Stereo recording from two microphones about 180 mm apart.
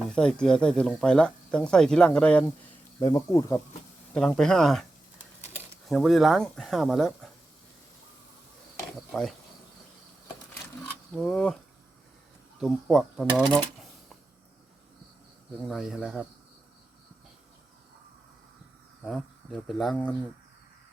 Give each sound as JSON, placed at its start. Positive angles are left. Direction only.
{"t": 0.1, "sound": "speech", "side_deg": 5}
{"t": 3.0, "sound": "speech", "side_deg": 20}
{"t": 4.1, "sound": "speech", "side_deg": 5}
{"t": 5.9, "sound": "speech", "side_deg": 0}
{"t": 9.1, "sound": "speech", "side_deg": 5}
{"t": 11.1, "sound": "speech", "side_deg": 5}
{"t": 12.5, "sound": "speech", "side_deg": 0}
{"t": 15.6, "sound": "speech", "side_deg": 0}
{"t": 19.0, "sound": "speech", "side_deg": 0}